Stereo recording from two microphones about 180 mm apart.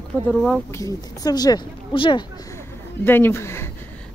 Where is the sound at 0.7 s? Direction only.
20° left (ahead or behind).